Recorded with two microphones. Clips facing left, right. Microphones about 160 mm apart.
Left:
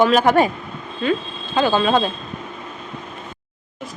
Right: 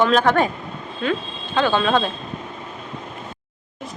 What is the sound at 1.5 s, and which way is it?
Speech, 10° left (ahead or behind).